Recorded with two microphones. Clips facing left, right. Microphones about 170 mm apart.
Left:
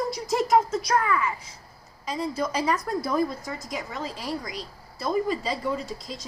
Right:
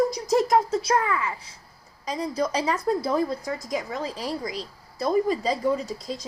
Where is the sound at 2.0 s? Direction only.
35° right (ahead or behind).